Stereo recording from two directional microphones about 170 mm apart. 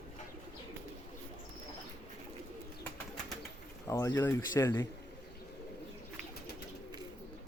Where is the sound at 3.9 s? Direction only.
15° left (ahead or behind).